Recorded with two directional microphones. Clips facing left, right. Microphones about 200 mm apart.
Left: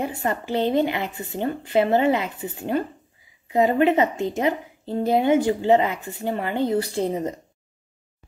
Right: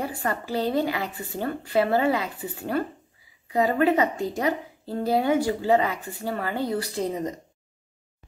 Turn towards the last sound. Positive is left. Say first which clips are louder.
# left 4 dB
turn(degrees=25)  # may be behind; listen again after turning